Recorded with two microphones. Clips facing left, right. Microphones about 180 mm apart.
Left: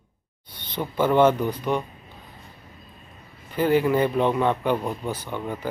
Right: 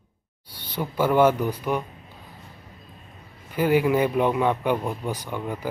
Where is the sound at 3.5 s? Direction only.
10° right (ahead or behind).